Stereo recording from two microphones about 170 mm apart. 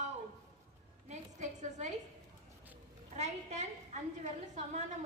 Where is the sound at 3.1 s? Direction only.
40° right (ahead or behind).